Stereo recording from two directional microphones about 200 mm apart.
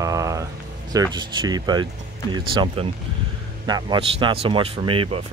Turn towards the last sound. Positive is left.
turn(degrees=-25)  # may be behind; listen again after turning